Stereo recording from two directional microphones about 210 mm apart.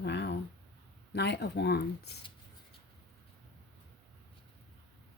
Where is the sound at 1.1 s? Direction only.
55° left (ahead or behind).